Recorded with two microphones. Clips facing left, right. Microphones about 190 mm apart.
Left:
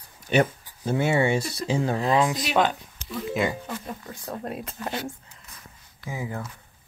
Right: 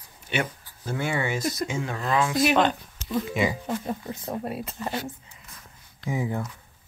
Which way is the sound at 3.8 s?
20° right (ahead or behind).